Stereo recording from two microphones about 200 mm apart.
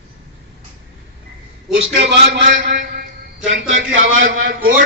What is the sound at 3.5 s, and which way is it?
Speech, 75° right (ahead or behind).